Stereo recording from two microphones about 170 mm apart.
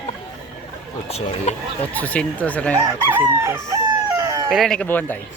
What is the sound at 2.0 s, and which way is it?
Speech, 10° left (ahead or behind).